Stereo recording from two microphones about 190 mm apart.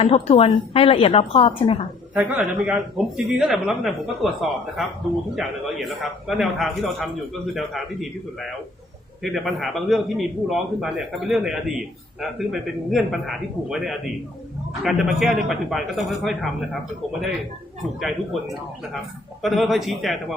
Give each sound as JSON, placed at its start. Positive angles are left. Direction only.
{"t": 0.0, "sound": "a woman's voice", "side_deg": 30}
{"t": 2.1, "sound": "a man's voice", "side_deg": -5}
{"t": 9.2, "sound": "a man's voice", "side_deg": 0}
{"t": 19.4, "sound": "a man's voice", "side_deg": 0}